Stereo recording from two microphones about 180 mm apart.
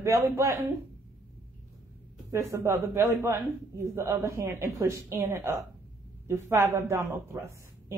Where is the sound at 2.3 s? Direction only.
15° right (ahead or behind).